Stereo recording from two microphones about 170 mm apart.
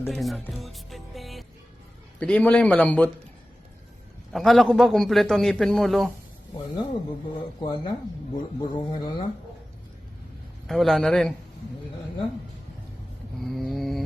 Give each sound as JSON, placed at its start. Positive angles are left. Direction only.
{"t": 0.1, "sound": "a man's voice", "side_deg": 0}
{"t": 4.3, "sound": "a man's voice", "side_deg": 0}
{"t": 7.6, "sound": "speech", "side_deg": 25}
{"t": 10.7, "sound": "a man's voice", "side_deg": 0}
{"t": 13.4, "sound": "a man's voice", "side_deg": 0}